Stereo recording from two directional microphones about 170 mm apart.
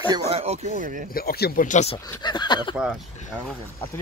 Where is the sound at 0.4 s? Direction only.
40° right (ahead or behind).